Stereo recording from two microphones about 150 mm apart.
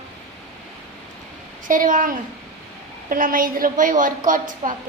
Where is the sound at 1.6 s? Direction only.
60° right (ahead or behind).